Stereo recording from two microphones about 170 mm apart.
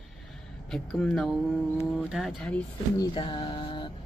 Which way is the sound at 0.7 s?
5° left (ahead or behind).